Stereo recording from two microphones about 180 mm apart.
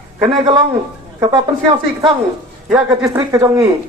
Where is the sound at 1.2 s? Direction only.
25° right (ahead or behind).